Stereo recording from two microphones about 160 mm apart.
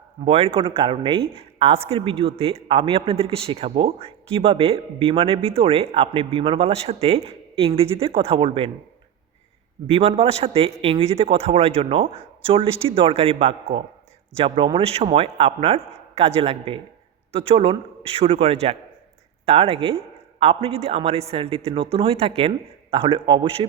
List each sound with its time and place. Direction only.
0.3 s speech: 35° right (ahead or behind)
9.8 s speech: 35° right (ahead or behind)